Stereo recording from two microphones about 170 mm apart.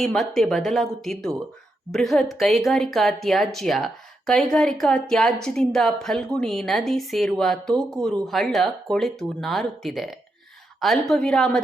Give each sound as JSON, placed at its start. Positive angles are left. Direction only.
{"t": 0.0, "sound": "speech", "side_deg": 0}